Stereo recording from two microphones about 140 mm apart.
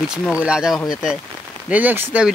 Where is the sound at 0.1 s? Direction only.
5° right (ahead or behind).